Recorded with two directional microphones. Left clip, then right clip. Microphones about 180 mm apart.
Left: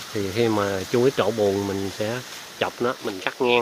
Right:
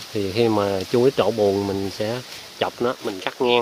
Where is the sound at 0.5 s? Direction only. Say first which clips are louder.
Right 2 dB; 10° right (ahead or behind).